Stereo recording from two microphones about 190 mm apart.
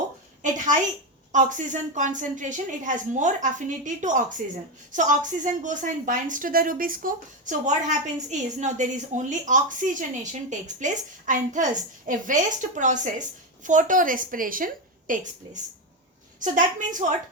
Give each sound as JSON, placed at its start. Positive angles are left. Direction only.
{"t": 0.4, "sound": "a woman's voice", "side_deg": -40}